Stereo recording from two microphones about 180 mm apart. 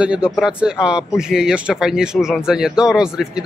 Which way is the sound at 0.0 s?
5° right (ahead or behind).